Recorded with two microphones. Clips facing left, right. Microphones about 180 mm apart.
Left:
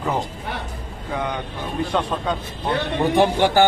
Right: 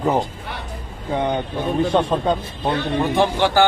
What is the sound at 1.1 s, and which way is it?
Speech, 25° right (ahead or behind).